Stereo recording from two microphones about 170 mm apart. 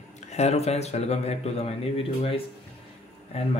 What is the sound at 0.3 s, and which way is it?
Speech, 40° left (ahead or behind).